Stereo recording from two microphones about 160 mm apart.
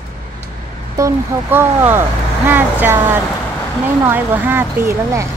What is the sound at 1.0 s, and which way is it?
Speech, 15° right (ahead or behind).